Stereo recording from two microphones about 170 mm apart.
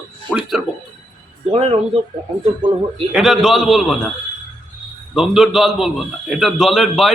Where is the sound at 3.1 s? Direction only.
Centre (ahead or behind).